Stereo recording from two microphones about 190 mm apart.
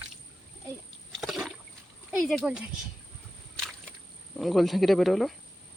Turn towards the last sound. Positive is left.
turn(degrees=0)  # may be behind; listen again after turning